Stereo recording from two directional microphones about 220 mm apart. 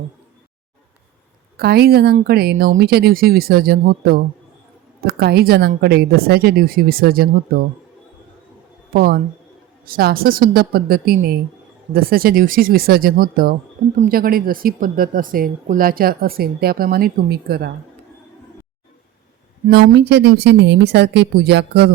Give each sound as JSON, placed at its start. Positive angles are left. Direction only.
{"t": 1.5, "sound": "speech", "side_deg": -45}
{"t": 8.9, "sound": "speech", "side_deg": -45}
{"t": 19.6, "sound": "speech", "side_deg": -45}